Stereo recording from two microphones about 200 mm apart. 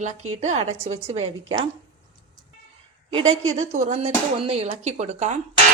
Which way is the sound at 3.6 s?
35° right (ahead or behind).